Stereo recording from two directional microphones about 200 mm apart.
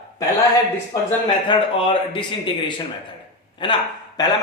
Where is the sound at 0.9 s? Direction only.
20° left (ahead or behind).